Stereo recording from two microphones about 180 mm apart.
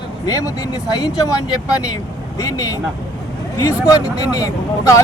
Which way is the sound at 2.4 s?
20° left (ahead or behind).